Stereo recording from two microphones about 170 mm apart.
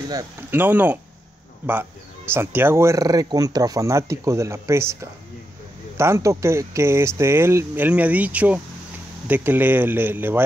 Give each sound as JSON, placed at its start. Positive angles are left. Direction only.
{"t": 0.1, "sound": "speech", "side_deg": -15}